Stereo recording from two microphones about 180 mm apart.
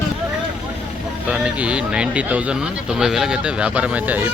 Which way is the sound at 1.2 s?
5° right (ahead or behind).